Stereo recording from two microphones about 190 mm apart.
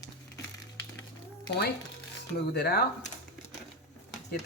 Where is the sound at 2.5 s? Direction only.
55° left (ahead or behind).